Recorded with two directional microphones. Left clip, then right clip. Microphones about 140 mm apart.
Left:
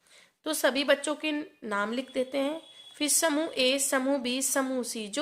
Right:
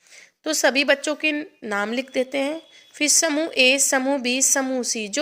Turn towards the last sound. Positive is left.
turn(degrees=-30)  # may be behind; listen again after turning